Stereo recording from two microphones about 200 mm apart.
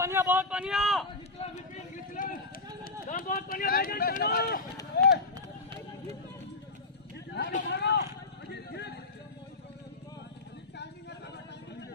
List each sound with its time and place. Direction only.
0.0 s speech: 15° right (ahead or behind)
2.2 s run: 40° left (ahead or behind)
2.8 s speech: 45° left (ahead or behind)
4.9 s run: 55° left (ahead or behind)
7.4 s speech: 55° left (ahead or behind)
8.5 s a sound: 55° left (ahead or behind)